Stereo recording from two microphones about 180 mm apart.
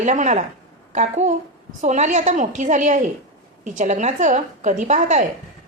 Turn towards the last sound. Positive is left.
turn(degrees=-40)  # may be behind; listen again after turning